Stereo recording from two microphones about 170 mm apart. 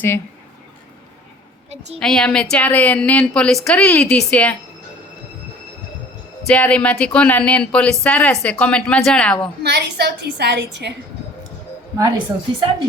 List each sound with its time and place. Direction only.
2.0 s a woman's voice: 5° left (ahead or behind)
6.5 s speech: 5° left (ahead or behind)
9.6 s a woman's voice: 80° right
11.9 s a woman's voice: 25° right (ahead or behind)